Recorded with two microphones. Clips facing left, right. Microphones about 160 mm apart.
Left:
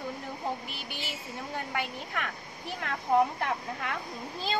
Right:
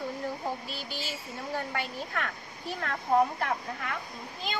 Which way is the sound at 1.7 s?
15° left (ahead or behind).